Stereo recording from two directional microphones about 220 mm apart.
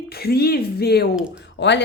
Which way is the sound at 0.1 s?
45° left (ahead or behind).